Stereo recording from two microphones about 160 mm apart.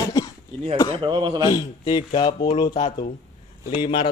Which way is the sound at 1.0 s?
30° right (ahead or behind).